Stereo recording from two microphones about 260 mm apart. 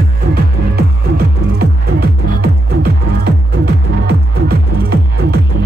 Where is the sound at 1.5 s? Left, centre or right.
Right.